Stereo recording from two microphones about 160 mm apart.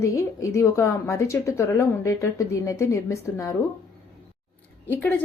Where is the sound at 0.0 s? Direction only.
20° left (ahead or behind).